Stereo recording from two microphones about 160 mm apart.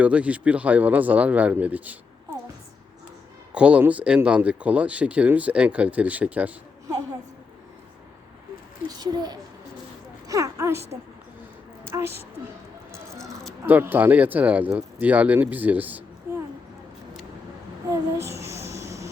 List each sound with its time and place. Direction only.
0.0 s speech: 10° right (ahead or behind)
3.5 s speech: 5° right (ahead or behind)
9.0 s a woman's voice: 25° right (ahead or behind)
11.9 s a woman's voice: 15° right (ahead or behind)
12.9 s a sound: centre (ahead or behind)
13.7 s speech: 10° right (ahead or behind)
17.9 s a sound: 15° right (ahead or behind)